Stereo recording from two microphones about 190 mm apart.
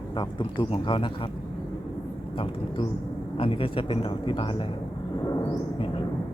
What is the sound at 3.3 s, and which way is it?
A man's voice, 30° left (ahead or behind).